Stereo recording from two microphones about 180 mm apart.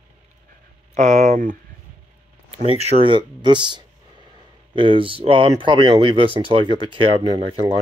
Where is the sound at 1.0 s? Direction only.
40° right (ahead or behind).